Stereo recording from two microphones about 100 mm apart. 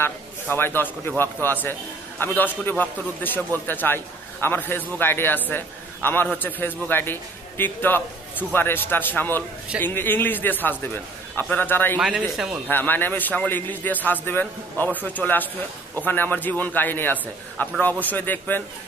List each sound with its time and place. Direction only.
0.0 s a man's voice: 20° left (ahead or behind)